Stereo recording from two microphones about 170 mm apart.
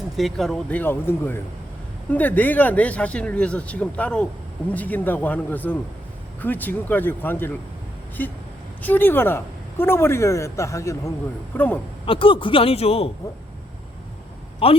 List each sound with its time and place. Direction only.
0.2 s speech: centre (ahead or behind)
8.8 s speech: 10° left (ahead or behind)
12.0 s a man's voice: 30° left (ahead or behind)
14.6 s a man's voice: 35° left (ahead or behind)